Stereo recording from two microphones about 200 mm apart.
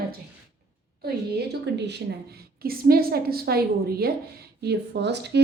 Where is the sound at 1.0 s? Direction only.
55° right (ahead or behind).